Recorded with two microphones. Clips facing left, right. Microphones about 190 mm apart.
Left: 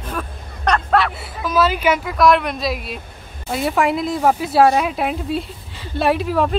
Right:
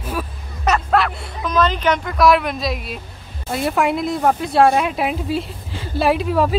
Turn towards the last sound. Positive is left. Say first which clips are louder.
# right 1 dB
turn(degrees=0)  # may be behind; listen again after turning